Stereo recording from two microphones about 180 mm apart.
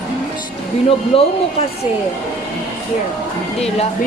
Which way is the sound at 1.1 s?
30° left (ahead or behind).